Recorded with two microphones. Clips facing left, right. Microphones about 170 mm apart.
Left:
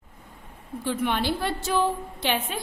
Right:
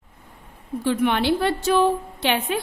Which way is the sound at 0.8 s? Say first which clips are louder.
Right 5 dB; 70° right (ahead or behind).